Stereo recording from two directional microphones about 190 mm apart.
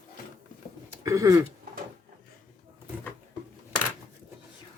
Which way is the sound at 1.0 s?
15° right (ahead or behind).